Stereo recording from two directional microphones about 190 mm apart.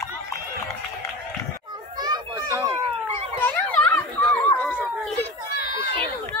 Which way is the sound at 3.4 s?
10° left (ahead or behind).